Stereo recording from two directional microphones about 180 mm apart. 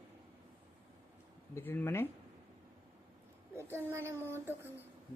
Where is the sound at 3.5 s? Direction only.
15° right (ahead or behind).